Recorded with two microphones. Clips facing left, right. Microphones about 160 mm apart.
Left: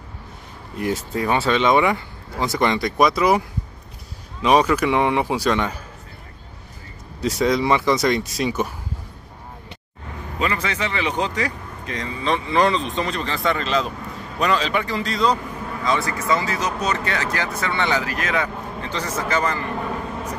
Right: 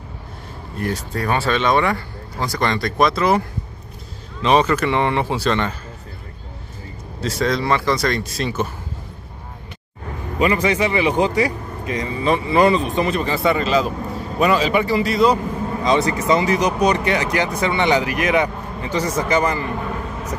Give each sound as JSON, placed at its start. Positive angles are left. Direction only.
{"t": 0.7, "sound": "speech", "side_deg": 15}
{"t": 7.2, "sound": "speech", "side_deg": 15}
{"t": 10.4, "sound": "speech", "side_deg": -15}
{"t": 15.7, "sound": "speech", "side_deg": -20}